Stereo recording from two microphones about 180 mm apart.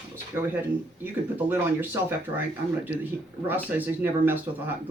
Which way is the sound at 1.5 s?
10° right (ahead or behind).